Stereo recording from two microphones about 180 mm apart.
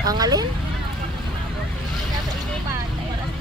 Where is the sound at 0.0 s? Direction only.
20° right (ahead or behind).